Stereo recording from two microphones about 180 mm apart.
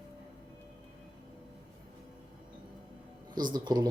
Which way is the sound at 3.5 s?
20° right (ahead or behind).